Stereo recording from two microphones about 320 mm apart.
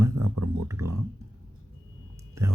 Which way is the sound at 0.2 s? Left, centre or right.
Right.